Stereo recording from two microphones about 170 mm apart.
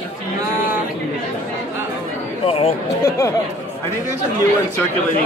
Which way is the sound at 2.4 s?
35° left (ahead or behind).